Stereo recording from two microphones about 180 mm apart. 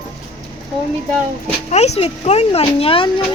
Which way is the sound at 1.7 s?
35° left (ahead or behind).